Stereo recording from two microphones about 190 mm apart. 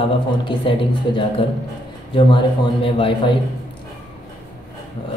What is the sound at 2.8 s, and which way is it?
Speech, 30° left (ahead or behind).